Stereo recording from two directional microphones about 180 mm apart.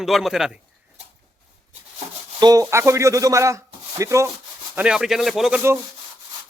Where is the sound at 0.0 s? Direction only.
Centre (ahead or behind).